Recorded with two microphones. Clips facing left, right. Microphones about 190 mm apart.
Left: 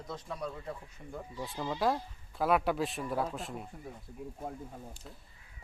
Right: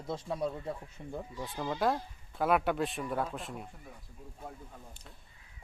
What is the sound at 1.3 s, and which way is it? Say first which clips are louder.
Speech: even; centre (ahead or behind).